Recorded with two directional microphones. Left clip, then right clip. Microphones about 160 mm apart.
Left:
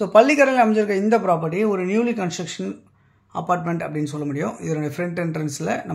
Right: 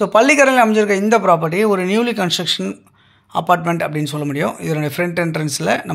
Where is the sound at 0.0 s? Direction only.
10° right (ahead or behind).